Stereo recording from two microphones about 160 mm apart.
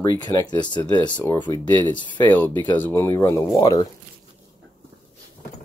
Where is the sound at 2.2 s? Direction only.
10° left (ahead or behind).